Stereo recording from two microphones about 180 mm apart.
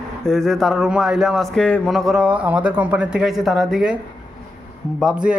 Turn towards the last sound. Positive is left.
turn(degrees=-5)  # may be behind; listen again after turning